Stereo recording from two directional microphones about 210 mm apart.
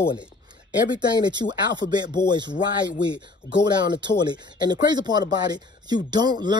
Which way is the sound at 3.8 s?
20° right (ahead or behind).